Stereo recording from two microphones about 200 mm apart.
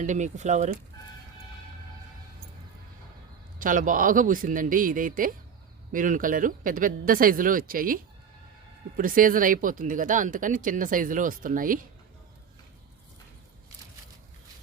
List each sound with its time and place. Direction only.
0.0 s speech: 35° right (ahead or behind)
3.6 s speech: 40° right (ahead or behind)
9.0 s speech: 45° right (ahead or behind)